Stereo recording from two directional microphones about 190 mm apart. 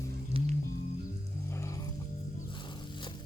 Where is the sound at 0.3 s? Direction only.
30° right (ahead or behind).